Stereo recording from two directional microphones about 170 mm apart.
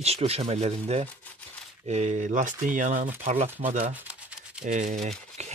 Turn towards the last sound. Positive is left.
turn(degrees=-40)  # may be behind; listen again after turning